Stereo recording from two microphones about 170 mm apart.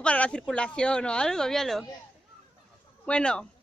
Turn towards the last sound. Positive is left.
turn(degrees=5)  # may be behind; listen again after turning